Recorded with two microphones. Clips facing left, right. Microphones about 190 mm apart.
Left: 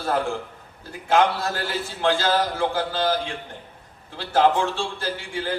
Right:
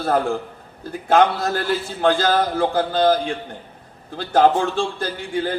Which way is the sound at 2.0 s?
35° right (ahead or behind).